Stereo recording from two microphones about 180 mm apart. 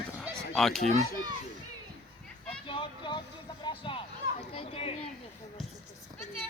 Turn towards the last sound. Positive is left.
turn(degrees=35)  # may be behind; listen again after turning